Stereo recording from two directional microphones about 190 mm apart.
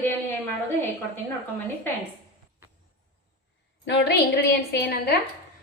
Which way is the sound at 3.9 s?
60° left (ahead or behind).